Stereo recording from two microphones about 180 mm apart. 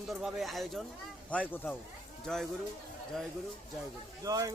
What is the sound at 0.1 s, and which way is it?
Speech, centre (ahead or behind).